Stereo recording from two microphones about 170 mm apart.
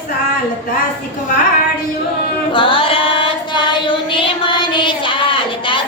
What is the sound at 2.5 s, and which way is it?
Female singing, 30° left (ahead or behind).